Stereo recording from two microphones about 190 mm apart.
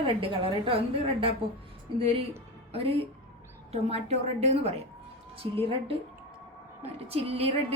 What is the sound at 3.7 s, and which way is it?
A woman's voice, 35° right (ahead or behind).